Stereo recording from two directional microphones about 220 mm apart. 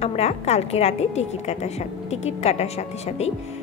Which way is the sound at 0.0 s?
30° left (ahead or behind).